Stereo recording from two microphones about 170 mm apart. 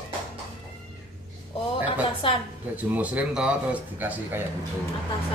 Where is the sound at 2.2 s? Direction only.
30° left (ahead or behind).